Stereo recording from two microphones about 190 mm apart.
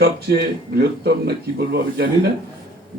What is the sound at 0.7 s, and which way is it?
A man's voice, 55° right (ahead or behind).